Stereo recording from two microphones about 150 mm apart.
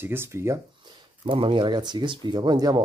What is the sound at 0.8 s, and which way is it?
Speech, 35° right (ahead or behind).